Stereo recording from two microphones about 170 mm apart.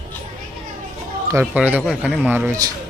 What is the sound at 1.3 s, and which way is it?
A man's voice, 15° right (ahead or behind).